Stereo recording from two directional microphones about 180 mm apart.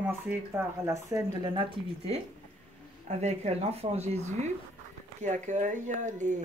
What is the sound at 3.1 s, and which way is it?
Speech, 40° right (ahead or behind).